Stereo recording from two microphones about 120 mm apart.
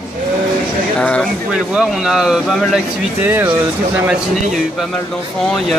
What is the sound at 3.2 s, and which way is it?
Speech, 15° right (ahead or behind).